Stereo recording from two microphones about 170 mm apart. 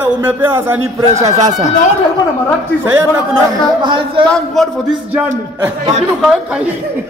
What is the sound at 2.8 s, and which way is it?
Speech, 15° right (ahead or behind).